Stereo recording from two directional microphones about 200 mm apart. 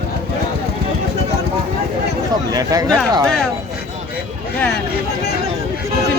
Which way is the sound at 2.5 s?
15° right (ahead or behind).